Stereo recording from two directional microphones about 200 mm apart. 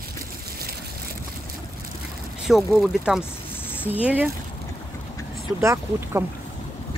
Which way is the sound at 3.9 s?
5° right (ahead or behind).